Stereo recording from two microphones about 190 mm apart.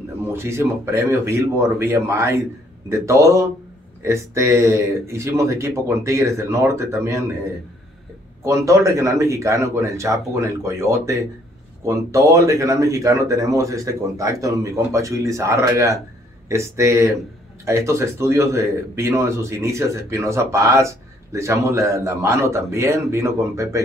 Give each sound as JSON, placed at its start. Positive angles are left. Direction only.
{"t": 0.3, "sound": "a man's voice", "side_deg": -15}
{"t": 8.5, "sound": "a man's voice", "side_deg": -15}